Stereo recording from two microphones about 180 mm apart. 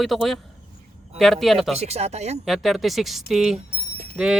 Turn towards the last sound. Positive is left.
turn(degrees=-5)  # may be behind; listen again after turning